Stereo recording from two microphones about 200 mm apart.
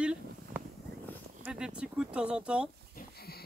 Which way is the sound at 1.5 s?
5° right (ahead or behind).